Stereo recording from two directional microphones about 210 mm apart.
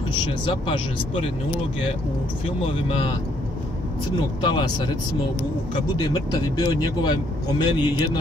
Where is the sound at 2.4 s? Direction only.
25° left (ahead or behind).